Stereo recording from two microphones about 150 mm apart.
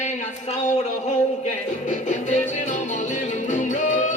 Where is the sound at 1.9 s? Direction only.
55° left (ahead or behind).